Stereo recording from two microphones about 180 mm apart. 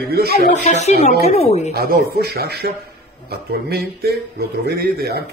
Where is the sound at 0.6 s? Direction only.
40° left (ahead or behind).